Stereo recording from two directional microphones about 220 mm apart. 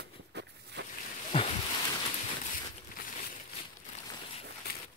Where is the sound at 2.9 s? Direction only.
35° left (ahead or behind).